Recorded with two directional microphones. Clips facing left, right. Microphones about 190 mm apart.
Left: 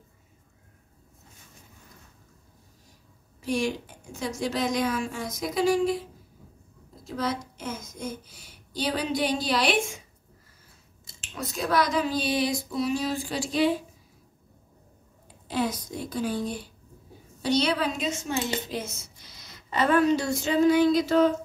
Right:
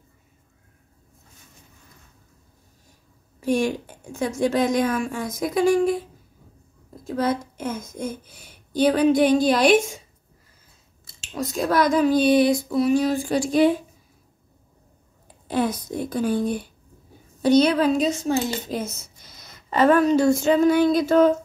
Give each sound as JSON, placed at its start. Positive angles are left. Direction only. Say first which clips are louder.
{"t": 3.3, "sound": "a child's voice", "louder": "right 5 dB", "side_deg": -50}
{"t": 7.1, "sound": "a child's voice", "louder": "right 6 dB", "side_deg": -55}
{"t": 11.5, "sound": "a child's voice", "louder": "right 5 dB", "side_deg": -45}
{"t": 15.4, "sound": "a child's voice", "louder": "right 5 dB", "side_deg": -55}
{"t": 19.3, "sound": "a sound", "louder": "right 6 dB", "side_deg": -50}